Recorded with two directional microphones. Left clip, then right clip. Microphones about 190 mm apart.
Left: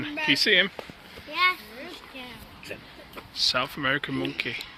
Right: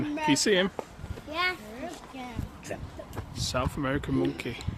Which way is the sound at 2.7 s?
45° right (ahead or behind).